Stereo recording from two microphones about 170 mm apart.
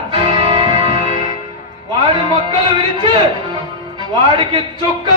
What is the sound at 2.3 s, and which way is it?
Speech, 25° right (ahead or behind).